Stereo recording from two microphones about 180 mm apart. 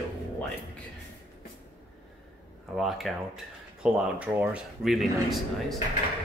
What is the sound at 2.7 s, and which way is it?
Speech, centre (ahead or behind).